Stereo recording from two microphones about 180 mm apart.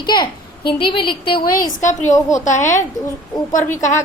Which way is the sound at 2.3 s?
40° left (ahead or behind).